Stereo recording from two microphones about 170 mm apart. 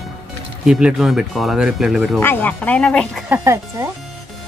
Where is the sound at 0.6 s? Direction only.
5° right (ahead or behind).